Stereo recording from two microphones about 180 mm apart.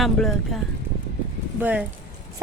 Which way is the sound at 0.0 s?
Centre (ahead or behind).